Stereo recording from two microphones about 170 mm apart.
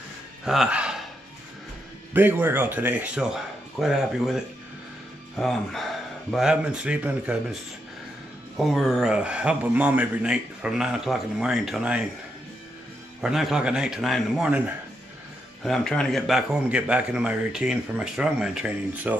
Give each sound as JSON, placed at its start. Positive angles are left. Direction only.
{"t": 0.5, "sound": "speech", "side_deg": -5}
{"t": 2.1, "sound": "a man's voice", "side_deg": -10}
{"t": 8.5, "sound": "a man's voice", "side_deg": 0}
{"t": 13.2, "sound": "a man's voice", "side_deg": 0}
{"t": 15.6, "sound": "a man's voice", "side_deg": 5}